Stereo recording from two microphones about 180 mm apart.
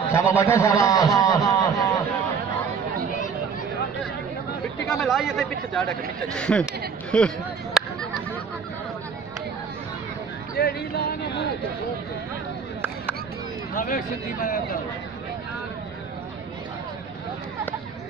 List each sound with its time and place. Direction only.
0.1 s a man's voice: 15° left (ahead or behind)
4.8 s speech: centre (ahead or behind)
10.6 s speech: 60° left (ahead or behind)
13.7 s speech: 50° left (ahead or behind)